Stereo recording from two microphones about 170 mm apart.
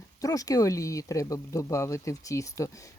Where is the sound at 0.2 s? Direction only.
20° left (ahead or behind).